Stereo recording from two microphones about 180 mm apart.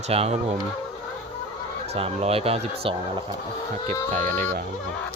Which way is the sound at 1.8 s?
35° right (ahead or behind).